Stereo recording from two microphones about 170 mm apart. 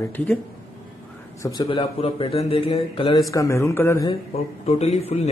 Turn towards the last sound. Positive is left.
turn(degrees=40)  # may be behind; listen again after turning